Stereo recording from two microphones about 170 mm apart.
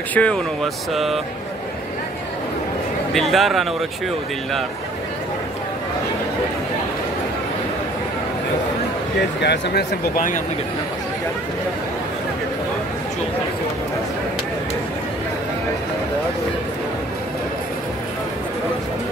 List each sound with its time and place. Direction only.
0.1 s speech: 5° left (ahead or behind)
3.1 s speech: centre (ahead or behind)
9.4 s speech: 75° left (ahead or behind); by 10.4 s 55° left (ahead or behind)